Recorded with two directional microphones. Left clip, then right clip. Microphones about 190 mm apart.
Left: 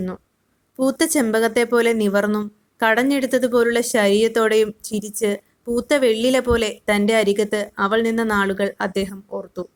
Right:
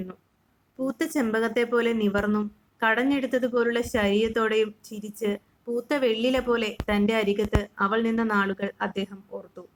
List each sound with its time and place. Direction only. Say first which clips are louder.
0.8 s speech: left 8 dB; 35° left (ahead or behind)